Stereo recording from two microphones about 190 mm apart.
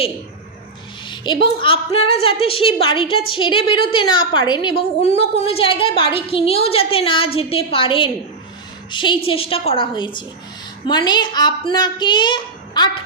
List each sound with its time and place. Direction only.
1.0 s a woman's voice: 25° left (ahead or behind)